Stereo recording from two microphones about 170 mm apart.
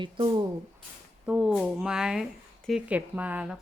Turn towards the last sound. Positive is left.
turn(degrees=-10)  # may be behind; listen again after turning